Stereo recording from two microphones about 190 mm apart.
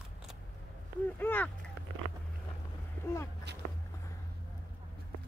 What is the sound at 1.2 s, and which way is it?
Speech, 10° left (ahead or behind).